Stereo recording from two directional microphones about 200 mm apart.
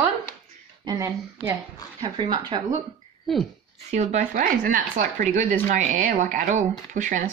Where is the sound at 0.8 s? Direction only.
20° right (ahead or behind).